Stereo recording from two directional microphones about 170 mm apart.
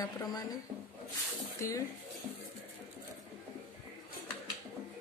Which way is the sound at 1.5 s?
20° left (ahead or behind).